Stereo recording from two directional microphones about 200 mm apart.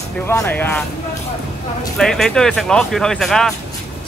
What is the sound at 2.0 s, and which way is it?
Speech, 5° left (ahead or behind).